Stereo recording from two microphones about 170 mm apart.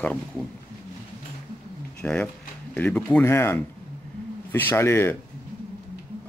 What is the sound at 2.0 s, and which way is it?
Speech, 5° left (ahead or behind).